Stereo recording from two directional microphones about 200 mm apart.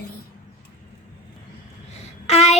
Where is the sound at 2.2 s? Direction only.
35° left (ahead or behind).